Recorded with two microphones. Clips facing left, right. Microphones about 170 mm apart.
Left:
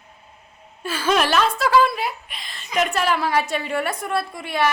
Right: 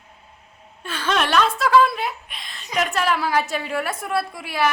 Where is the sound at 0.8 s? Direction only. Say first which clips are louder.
Left 3 dB; 5° left (ahead or behind).